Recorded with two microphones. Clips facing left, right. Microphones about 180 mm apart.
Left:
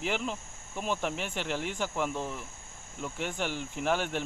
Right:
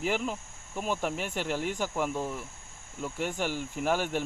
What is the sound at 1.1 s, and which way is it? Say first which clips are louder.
Speech: right 2 dB; 45° right (ahead or behind).